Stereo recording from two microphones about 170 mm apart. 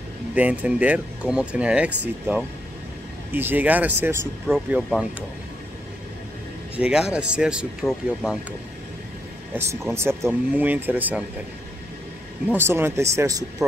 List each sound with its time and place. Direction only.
0.3 s speech: 10° right (ahead or behind)
6.8 s speech: 5° right (ahead or behind)
7.8 s speech: 10° left (ahead or behind)
9.5 s speech: 10° right (ahead or behind)
12.4 s speech: 15° right (ahead or behind)